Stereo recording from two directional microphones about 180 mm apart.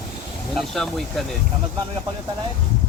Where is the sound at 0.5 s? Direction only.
Centre (ahead or behind).